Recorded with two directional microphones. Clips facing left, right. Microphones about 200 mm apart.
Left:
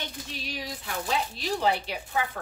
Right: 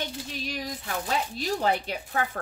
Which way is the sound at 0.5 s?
45° right (ahead or behind).